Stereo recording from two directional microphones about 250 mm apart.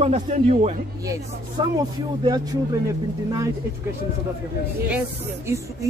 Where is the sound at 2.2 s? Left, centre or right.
Centre.